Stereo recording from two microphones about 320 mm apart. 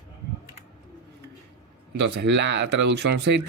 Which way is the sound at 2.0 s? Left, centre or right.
Right.